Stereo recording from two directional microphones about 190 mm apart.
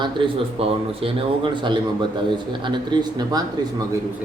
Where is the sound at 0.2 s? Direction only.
25° right (ahead or behind).